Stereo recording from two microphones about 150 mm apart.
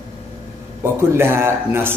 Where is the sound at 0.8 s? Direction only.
15° right (ahead or behind).